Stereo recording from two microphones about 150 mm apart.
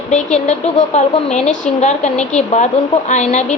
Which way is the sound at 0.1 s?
50° left (ahead or behind).